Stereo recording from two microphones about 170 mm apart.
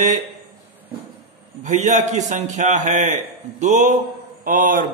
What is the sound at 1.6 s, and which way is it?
A man's voice, 45° right (ahead or behind).